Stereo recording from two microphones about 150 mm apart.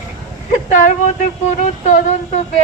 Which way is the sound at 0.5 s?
55° left (ahead or behind).